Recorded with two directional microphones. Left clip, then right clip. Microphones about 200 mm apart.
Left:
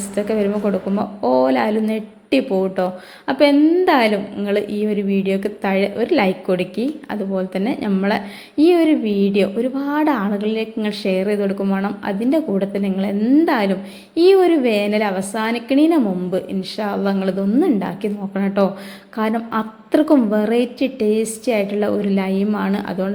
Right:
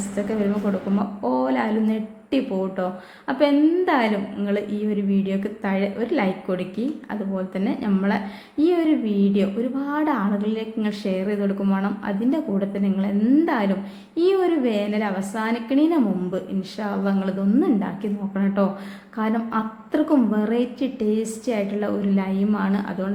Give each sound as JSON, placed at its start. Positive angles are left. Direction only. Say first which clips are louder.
{"t": 0.2, "sound": "a woman's voice", "louder": "left 6 dB", "side_deg": 20}